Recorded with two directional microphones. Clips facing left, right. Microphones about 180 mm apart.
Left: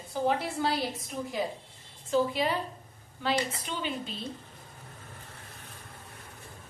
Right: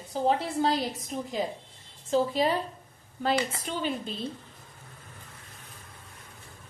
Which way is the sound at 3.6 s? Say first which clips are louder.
Right 3 dB; 40° right (ahead or behind).